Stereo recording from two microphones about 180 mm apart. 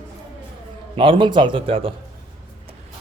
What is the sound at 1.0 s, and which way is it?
Speech, 30° right (ahead or behind).